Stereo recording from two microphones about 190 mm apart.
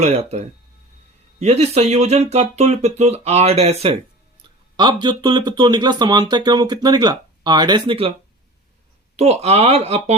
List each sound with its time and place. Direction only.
0.0 s speech: 35° right (ahead or behind)
9.1 s speech: 35° right (ahead or behind)